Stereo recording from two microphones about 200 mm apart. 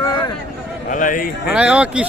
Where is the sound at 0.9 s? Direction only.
40° left (ahead or behind).